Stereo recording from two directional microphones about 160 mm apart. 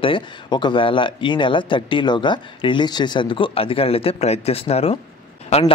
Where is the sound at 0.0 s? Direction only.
30° left (ahead or behind).